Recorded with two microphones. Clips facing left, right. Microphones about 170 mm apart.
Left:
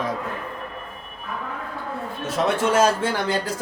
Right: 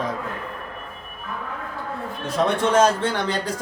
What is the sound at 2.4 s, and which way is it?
Speech, 5° left (ahead or behind).